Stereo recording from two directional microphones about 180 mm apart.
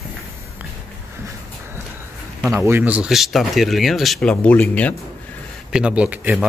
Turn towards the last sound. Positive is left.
turn(degrees=-10)  # may be behind; listen again after turning